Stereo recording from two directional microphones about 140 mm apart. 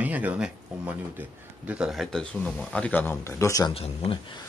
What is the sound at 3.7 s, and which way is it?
Speech, 40° left (ahead or behind).